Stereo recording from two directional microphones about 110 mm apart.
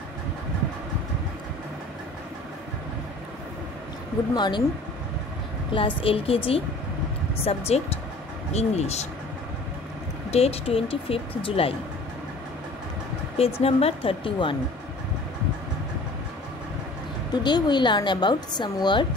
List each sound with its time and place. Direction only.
4.4 s a woman's voice: 45° left (ahead or behind)
5.7 s speech: 50° left (ahead or behind); by 8.0 s 70° left (ahead or behind)
8.5 s speech: 80° left
10.3 s speech: 65° left (ahead or behind)
13.6 s speech: 65° left (ahead or behind)
17.3 s a woman's voice: 40° left (ahead or behind)